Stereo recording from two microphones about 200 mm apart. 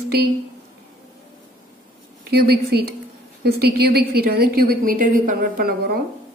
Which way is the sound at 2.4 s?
50° right (ahead or behind).